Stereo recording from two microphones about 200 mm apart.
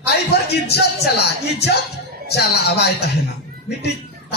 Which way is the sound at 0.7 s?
55° left (ahead or behind).